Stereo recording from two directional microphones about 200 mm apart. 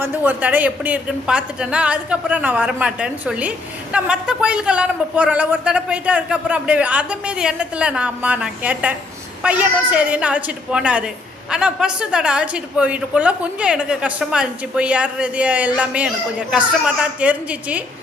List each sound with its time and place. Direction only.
0.0 s a woman's voice: 10° right (ahead or behind)